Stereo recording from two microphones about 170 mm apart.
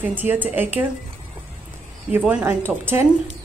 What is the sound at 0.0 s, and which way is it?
Speech, 10° right (ahead or behind).